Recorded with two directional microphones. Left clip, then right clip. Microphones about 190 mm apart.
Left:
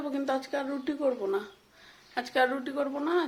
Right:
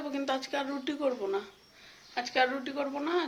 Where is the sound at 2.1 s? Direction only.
30° left (ahead or behind).